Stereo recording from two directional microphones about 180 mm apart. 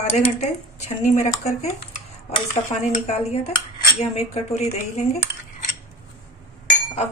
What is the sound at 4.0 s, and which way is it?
Speech, 40° left (ahead or behind).